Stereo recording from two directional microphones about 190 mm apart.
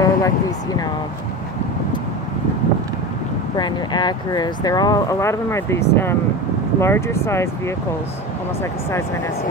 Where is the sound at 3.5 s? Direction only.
25° left (ahead or behind).